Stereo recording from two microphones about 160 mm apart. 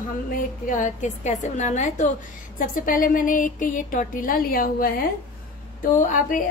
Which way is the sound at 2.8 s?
60° left (ahead or behind).